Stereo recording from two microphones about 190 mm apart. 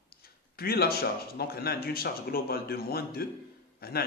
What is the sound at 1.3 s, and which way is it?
Speech, 55° left (ahead or behind).